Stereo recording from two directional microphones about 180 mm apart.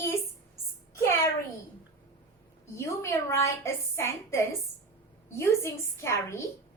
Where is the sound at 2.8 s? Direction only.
15° left (ahead or behind).